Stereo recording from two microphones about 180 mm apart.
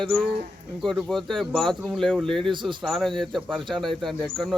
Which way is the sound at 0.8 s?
Centre (ahead or behind).